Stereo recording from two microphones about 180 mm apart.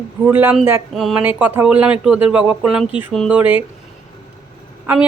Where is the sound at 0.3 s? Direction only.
10° right (ahead or behind).